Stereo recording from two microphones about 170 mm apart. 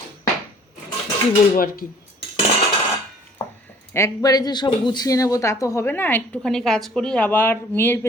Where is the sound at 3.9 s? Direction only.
20° left (ahead or behind).